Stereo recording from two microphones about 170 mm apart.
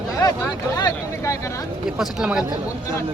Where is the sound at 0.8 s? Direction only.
25° left (ahead or behind).